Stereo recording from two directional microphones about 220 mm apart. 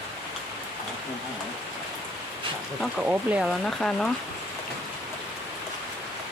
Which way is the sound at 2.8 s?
5° right (ahead or behind).